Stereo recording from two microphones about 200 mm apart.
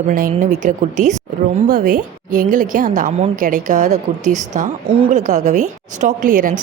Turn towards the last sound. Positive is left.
turn(degrees=-45)  # may be behind; listen again after turning